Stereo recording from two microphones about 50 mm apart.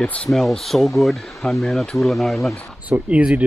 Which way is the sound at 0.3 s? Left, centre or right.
Centre.